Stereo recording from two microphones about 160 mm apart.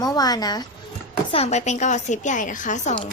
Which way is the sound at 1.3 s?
45° left (ahead or behind).